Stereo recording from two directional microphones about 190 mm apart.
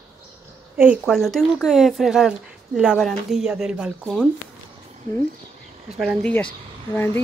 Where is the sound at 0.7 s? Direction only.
5° right (ahead or behind).